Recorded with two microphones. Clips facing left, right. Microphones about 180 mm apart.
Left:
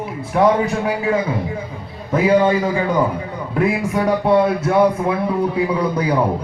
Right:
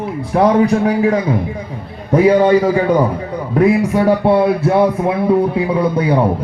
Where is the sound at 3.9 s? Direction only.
Centre (ahead or behind).